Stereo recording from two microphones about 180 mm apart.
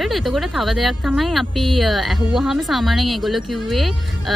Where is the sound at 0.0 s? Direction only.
Centre (ahead or behind).